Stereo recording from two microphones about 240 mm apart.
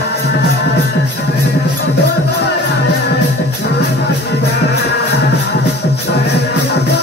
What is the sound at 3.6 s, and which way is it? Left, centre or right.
Music, left.